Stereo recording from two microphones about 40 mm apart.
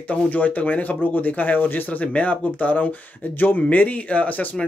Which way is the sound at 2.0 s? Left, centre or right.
Left.